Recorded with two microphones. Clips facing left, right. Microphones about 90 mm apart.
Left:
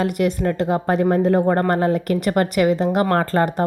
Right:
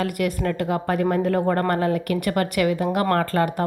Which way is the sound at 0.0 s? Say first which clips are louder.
Left 4 dB; 25° left (ahead or behind).